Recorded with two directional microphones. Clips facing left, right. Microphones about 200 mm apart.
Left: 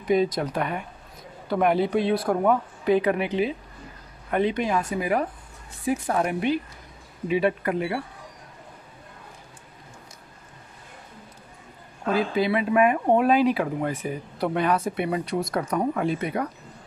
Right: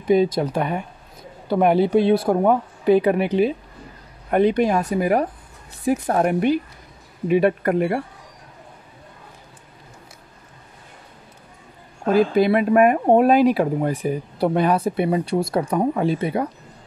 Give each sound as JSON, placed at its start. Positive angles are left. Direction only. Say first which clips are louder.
{"t": 0.0, "sound": "speech", "louder": "right 5 dB", "side_deg": -30}
{"t": 12.1, "sound": "speech", "louder": "right 6 dB", "side_deg": -50}